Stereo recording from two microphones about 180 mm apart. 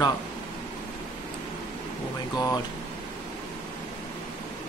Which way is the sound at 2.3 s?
20° left (ahead or behind).